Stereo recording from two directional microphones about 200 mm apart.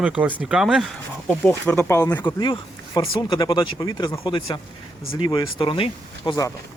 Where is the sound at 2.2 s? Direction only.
25° left (ahead or behind).